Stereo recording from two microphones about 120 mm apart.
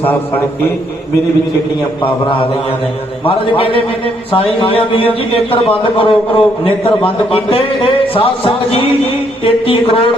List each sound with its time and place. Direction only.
0.0 s a man's voice: 15° left (ahead or behind)
2.0 s a man's voice: 45° left (ahead or behind)